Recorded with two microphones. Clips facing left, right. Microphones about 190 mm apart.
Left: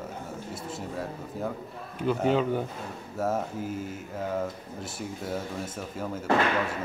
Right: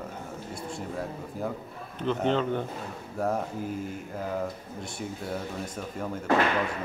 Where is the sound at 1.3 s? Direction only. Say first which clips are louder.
Even; centre (ahead or behind).